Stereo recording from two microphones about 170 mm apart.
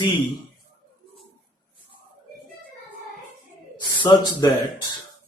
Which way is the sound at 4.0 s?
25° left (ahead or behind).